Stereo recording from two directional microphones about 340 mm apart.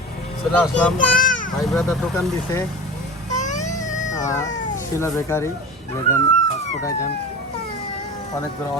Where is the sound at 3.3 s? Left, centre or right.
Left.